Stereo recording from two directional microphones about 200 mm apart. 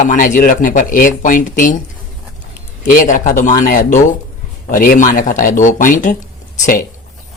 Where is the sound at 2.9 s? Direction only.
40° left (ahead or behind).